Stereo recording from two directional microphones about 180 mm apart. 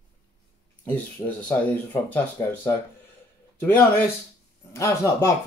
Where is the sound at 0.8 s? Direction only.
10° left (ahead or behind).